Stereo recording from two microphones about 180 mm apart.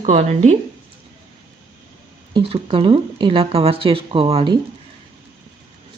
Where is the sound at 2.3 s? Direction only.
30° right (ahead or behind).